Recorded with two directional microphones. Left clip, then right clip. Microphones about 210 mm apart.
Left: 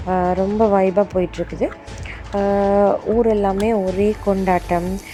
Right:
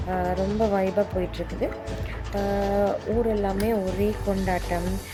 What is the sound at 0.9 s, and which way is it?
A woman's voice, 25° left (ahead or behind).